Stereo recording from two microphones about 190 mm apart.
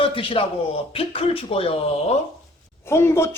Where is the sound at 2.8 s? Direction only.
15° left (ahead or behind).